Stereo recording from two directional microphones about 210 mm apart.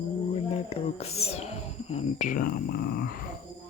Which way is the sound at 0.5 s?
30° left (ahead or behind).